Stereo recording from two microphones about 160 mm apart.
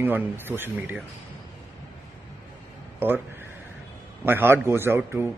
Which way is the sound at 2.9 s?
15° right (ahead or behind).